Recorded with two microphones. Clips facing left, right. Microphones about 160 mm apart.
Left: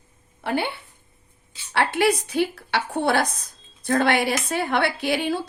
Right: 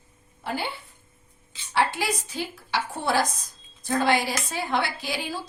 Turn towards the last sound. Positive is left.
turn(degrees=60)  # may be behind; listen again after turning